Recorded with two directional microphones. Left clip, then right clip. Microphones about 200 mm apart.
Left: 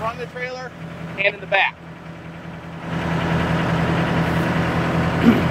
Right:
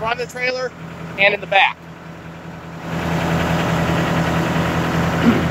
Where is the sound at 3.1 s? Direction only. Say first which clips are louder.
Right 2 dB; 45° right (ahead or behind).